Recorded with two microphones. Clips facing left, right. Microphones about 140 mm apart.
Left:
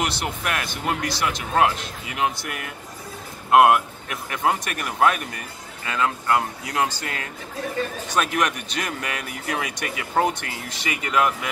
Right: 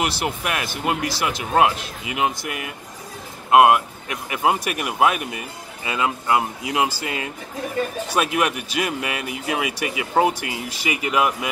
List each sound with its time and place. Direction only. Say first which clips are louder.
0.0 s speech: right 2 dB; 10° right (ahead or behind)